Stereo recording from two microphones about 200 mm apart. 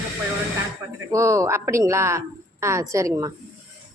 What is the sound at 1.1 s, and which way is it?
A woman's voice, 15° right (ahead or behind).